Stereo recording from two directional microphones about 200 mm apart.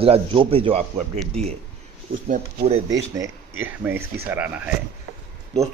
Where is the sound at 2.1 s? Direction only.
45° right (ahead or behind).